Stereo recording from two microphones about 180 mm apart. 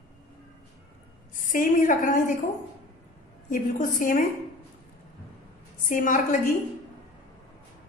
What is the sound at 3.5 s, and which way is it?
Speech, 45° left (ahead or behind).